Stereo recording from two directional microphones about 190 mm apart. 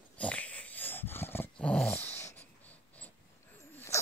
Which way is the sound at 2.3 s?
10° left (ahead or behind).